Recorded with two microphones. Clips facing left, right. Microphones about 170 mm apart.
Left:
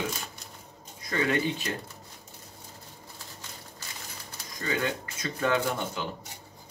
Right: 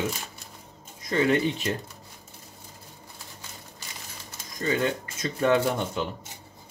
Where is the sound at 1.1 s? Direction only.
25° right (ahead or behind).